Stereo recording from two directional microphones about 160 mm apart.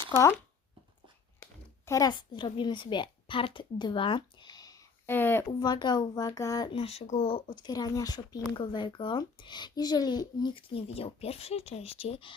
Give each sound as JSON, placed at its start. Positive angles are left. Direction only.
{"t": 1.8, "sound": "a woman's voice", "side_deg": 20}
{"t": 5.5, "sound": "speech", "side_deg": 25}
{"t": 6.7, "sound": "speech", "side_deg": 40}